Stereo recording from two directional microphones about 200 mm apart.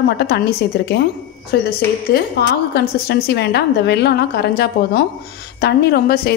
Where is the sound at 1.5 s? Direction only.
55° left (ahead or behind).